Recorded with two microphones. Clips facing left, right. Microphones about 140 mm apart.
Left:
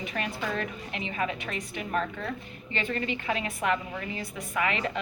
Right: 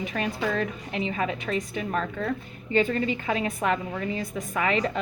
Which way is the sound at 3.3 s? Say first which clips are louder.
Right 2 dB; 35° right (ahead or behind).